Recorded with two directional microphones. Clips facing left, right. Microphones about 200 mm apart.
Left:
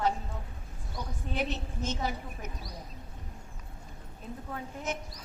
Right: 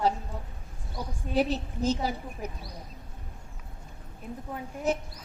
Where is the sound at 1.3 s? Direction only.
35° right (ahead or behind).